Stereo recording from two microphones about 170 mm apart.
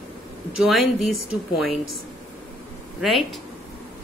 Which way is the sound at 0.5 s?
Centre (ahead or behind).